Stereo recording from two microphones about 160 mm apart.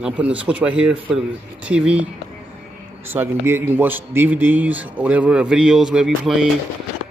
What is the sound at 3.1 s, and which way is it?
A man's voice, 15° right (ahead or behind).